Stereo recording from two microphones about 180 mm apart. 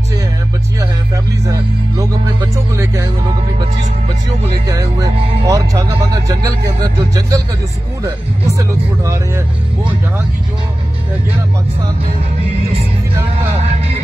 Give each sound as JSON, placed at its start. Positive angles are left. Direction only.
{"t": 1.5, "sound": "music", "side_deg": -15}
{"t": 4.6, "sound": "speech", "side_deg": -20}
{"t": 8.0, "sound": "music", "side_deg": -15}